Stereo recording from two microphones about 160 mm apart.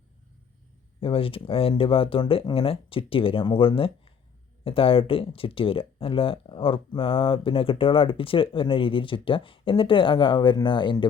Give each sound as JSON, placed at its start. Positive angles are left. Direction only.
{"t": 1.0, "sound": "speech", "side_deg": 35}